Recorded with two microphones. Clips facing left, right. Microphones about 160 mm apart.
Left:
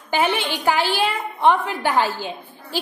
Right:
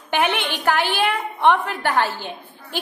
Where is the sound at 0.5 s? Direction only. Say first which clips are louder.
Left 1 dB; 10° left (ahead or behind).